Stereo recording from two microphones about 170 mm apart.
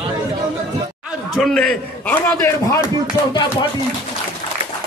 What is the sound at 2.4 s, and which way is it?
Speech, 20° left (ahead or behind).